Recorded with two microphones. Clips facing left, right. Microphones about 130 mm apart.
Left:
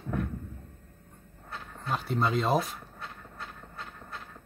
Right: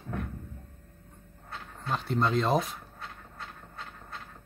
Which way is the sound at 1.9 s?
5° left (ahead or behind).